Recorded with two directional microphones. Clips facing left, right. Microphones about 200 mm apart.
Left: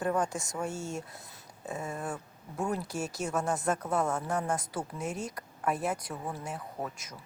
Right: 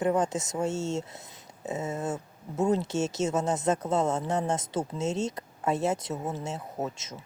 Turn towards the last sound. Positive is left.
turn(degrees=-25)  # may be behind; listen again after turning